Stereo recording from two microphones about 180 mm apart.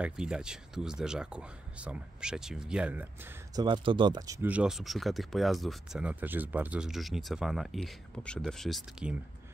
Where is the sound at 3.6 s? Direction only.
25° right (ahead or behind).